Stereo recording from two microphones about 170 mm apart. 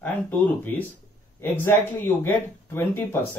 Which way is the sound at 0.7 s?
10° left (ahead or behind).